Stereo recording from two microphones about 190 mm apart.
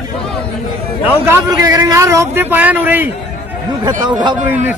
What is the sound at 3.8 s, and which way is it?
Speech, 20° right (ahead or behind).